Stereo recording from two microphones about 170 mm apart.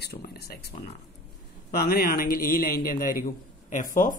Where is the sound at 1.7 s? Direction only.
65° left (ahead or behind).